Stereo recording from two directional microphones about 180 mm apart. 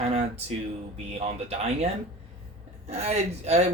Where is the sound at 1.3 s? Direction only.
35° right (ahead or behind).